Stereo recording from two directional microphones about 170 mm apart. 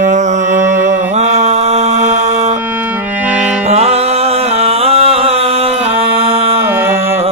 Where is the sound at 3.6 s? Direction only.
40° right (ahead or behind).